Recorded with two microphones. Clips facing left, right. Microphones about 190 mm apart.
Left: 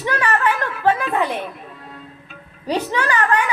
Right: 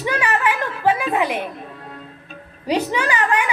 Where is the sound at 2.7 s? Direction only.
15° right (ahead or behind).